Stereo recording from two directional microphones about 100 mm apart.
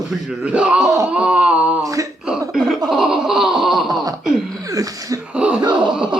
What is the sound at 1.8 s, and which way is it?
Speech, 35° right (ahead or behind).